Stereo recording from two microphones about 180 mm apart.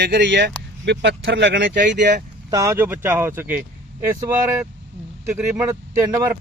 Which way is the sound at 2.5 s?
15° right (ahead or behind).